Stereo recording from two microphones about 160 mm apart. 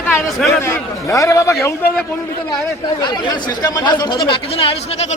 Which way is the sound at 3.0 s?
25° left (ahead or behind).